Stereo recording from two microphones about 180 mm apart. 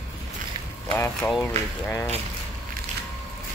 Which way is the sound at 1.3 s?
5° left (ahead or behind).